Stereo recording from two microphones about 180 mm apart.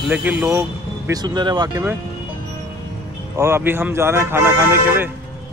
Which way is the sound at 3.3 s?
15° right (ahead or behind).